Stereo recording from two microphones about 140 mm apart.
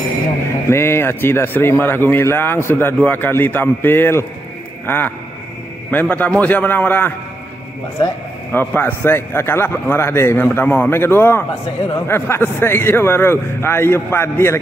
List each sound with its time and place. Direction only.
0.7 s a man's voice: 20° left (ahead or behind)
8.5 s speech: 15° left (ahead or behind)